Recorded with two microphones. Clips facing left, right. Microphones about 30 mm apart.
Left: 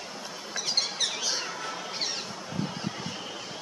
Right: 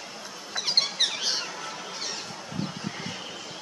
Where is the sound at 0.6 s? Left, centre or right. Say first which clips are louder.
Right 4 dB; right.